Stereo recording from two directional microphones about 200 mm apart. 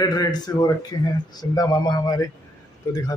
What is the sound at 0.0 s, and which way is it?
Speech, 20° left (ahead or behind).